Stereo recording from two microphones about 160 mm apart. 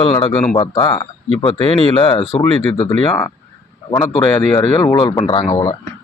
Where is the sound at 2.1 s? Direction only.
45° left (ahead or behind).